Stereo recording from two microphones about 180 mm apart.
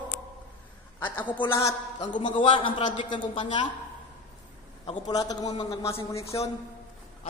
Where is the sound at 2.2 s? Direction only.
30° left (ahead or behind).